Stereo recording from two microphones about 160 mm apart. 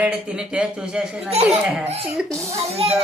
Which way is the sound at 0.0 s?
5° right (ahead or behind).